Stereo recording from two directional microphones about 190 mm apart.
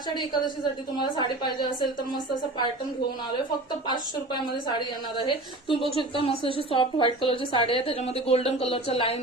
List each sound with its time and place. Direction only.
0.1 s a woman's voice: 25° left (ahead or behind)
3.8 s a woman's voice: 25° left (ahead or behind)